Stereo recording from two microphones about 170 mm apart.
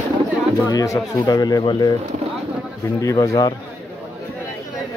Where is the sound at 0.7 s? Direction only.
20° left (ahead or behind).